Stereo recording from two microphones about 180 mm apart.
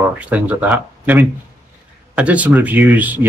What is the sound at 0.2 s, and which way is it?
Speech, 10° right (ahead or behind).